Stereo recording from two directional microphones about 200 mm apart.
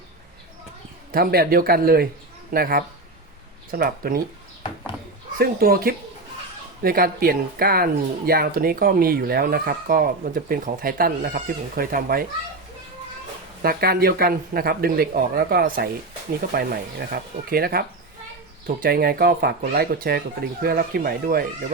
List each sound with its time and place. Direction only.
1.1 s speech: 50° right (ahead or behind)
5.4 s speech: 50° right (ahead or behind)
13.6 s speech: 50° right (ahead or behind)